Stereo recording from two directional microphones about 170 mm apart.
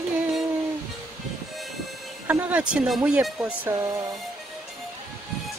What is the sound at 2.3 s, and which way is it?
Speech, 10° right (ahead or behind).